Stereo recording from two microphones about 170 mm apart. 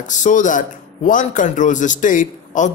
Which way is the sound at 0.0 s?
45° left (ahead or behind).